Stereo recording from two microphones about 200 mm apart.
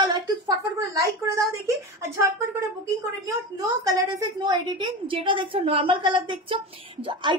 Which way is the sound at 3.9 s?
20° right (ahead or behind).